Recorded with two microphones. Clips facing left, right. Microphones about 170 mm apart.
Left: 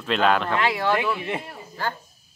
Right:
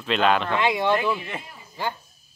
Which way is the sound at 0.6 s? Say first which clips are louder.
Right 1 dB; 15° right (ahead or behind).